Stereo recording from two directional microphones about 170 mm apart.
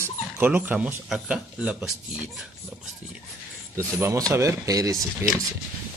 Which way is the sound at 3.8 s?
15° right (ahead or behind).